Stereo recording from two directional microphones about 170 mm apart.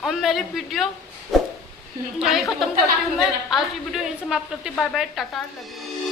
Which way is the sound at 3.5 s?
Centre (ahead or behind).